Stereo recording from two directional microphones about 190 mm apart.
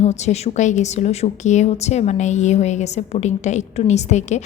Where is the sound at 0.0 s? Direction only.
35° left (ahead or behind).